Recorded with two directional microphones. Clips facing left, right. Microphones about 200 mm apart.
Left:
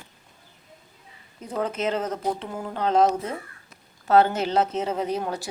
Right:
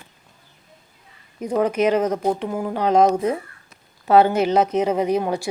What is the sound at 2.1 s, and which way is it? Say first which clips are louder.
Speech: right 6 dB; 50° right (ahead or behind).